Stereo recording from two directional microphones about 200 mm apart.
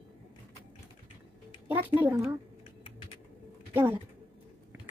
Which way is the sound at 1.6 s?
10° right (ahead or behind).